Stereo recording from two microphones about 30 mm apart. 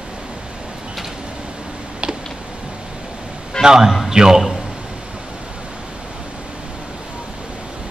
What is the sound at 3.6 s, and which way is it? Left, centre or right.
Speech, centre.